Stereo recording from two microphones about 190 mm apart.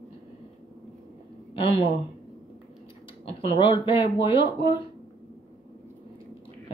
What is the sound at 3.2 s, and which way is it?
Speech, 25° left (ahead or behind).